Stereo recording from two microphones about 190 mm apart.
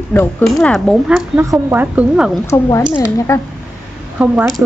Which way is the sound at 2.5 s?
15° left (ahead or behind).